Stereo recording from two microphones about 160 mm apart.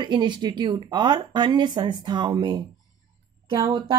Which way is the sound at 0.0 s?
30° right (ahead or behind).